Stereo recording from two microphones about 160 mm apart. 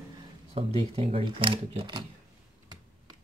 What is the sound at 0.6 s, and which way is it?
Speech, 35° right (ahead or behind).